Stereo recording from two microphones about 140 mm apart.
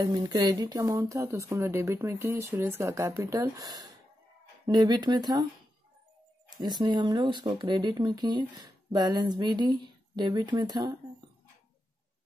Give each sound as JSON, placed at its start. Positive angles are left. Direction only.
{"t": 0.0, "sound": "speech", "side_deg": -30}
{"t": 6.5, "sound": "speech", "side_deg": -30}